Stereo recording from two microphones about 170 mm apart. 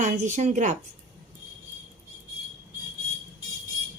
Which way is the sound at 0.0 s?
45° right (ahead or behind).